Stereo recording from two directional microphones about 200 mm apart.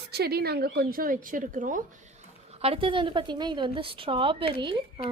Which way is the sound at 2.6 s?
30° right (ahead or behind).